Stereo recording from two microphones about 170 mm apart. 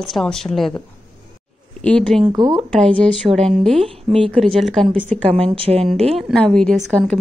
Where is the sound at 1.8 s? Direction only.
5° left (ahead or behind).